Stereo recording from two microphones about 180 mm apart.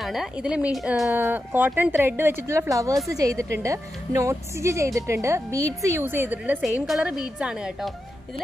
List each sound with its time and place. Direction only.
0.0 s a woman's voice: centre (ahead or behind)